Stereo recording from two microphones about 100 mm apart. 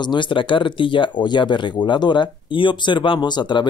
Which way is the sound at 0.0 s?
50° left (ahead or behind).